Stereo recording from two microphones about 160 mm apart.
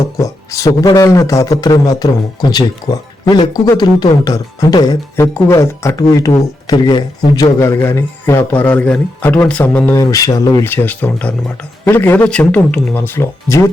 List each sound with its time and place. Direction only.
0.0 s a man's voice: 20° left (ahead or behind)
7.6 s speech: 15° left (ahead or behind)
10.0 s speech: 20° left (ahead or behind)